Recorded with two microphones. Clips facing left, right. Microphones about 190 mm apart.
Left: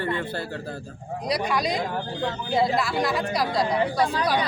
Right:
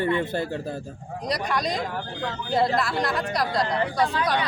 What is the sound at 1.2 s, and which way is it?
Speech, centre (ahead or behind).